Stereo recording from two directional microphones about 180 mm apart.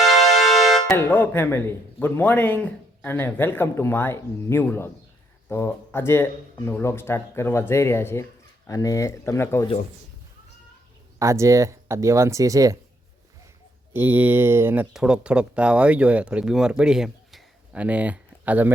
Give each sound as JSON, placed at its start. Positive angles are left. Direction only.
{"t": 0.0, "sound": "speech", "side_deg": 0}
{"t": 11.2, "sound": "speech", "side_deg": -15}
{"t": 13.9, "sound": "speech", "side_deg": -10}